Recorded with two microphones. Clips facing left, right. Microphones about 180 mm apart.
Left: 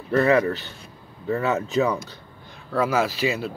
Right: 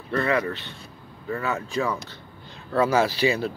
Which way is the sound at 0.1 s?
25° left (ahead or behind).